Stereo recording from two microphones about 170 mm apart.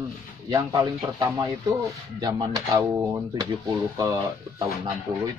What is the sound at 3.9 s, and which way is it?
Speech, 25° right (ahead or behind).